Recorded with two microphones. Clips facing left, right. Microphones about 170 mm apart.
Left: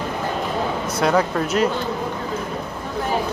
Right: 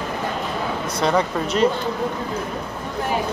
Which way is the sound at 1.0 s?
5° left (ahead or behind).